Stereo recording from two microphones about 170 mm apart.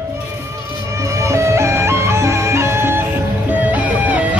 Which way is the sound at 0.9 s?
20° right (ahead or behind).